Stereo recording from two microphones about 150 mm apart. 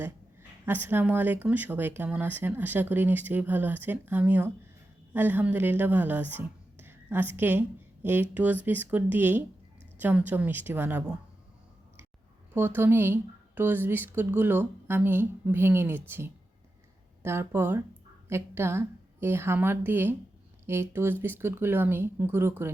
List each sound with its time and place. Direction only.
0.6 s a woman's voice: 15° right (ahead or behind)
12.5 s speech: 15° right (ahead or behind)